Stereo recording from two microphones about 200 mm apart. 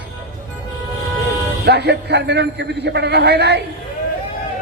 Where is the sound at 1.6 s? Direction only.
55° right (ahead or behind).